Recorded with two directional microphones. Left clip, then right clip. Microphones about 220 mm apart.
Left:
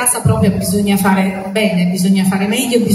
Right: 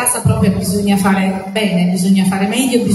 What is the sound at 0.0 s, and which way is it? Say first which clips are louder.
A woman's voice: left 1 dB; 20° left (ahead or behind).